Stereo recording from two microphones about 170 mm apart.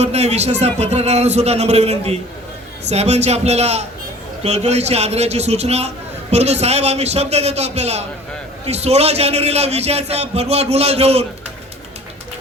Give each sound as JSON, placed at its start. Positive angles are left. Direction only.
{"t": 0.0, "sound": "a man's voice", "side_deg": -40}